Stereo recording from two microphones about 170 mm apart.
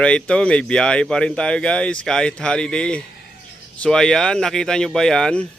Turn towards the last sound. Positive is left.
turn(degrees=5)  # may be behind; listen again after turning